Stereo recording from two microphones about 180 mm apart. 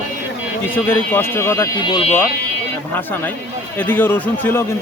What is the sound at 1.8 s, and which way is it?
Speech, 30° left (ahead or behind).